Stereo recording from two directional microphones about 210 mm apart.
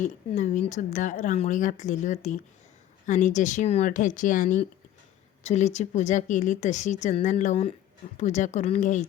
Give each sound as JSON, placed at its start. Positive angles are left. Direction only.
{"t": 0.0, "sound": "speech", "side_deg": 35}